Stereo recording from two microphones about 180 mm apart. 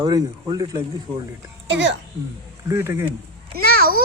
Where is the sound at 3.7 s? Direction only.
55° right (ahead or behind).